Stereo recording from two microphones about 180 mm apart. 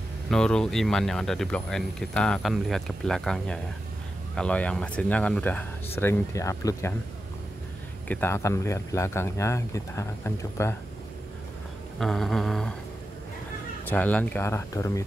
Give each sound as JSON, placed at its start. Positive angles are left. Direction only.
{"t": 0.3, "sound": "speech", "side_deg": 5}
{"t": 8.1, "sound": "speech", "side_deg": 15}
{"t": 12.0, "sound": "speech", "side_deg": 0}
{"t": 13.8, "sound": "speech", "side_deg": 10}